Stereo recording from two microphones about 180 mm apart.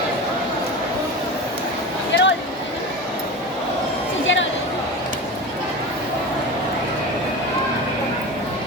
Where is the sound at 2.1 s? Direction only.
85° left.